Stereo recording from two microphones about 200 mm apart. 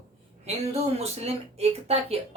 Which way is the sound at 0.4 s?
30° right (ahead or behind).